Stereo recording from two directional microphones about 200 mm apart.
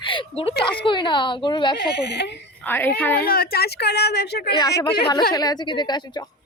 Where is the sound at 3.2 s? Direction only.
50° left (ahead or behind).